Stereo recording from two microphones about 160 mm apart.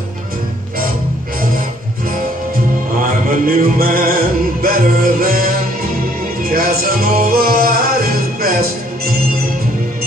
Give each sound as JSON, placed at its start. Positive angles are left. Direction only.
{"t": 3.3, "sound": "music", "side_deg": -65}